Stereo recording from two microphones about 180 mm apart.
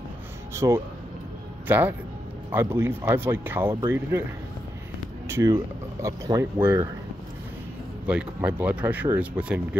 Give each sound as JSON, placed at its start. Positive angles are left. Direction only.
{"t": 0.6, "sound": "speech", "side_deg": -15}
{"t": 5.3, "sound": "speech", "side_deg": -15}
{"t": 8.1, "sound": "speech", "side_deg": -5}